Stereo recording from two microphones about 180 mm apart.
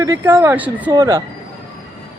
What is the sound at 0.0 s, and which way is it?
Speech, 15° right (ahead or behind).